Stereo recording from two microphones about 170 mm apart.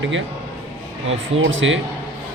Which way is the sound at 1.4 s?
90° right.